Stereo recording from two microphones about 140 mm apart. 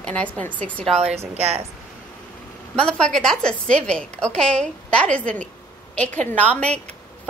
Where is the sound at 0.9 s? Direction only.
50° right (ahead or behind).